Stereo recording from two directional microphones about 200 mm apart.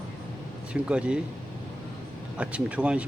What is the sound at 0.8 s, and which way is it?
Speech, 5° right (ahead or behind).